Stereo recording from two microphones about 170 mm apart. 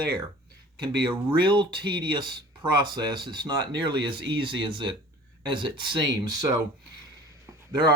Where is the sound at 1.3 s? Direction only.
25° right (ahead or behind).